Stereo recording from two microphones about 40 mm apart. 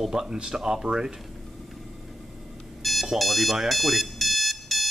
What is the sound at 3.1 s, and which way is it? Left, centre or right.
Alarm clock, centre.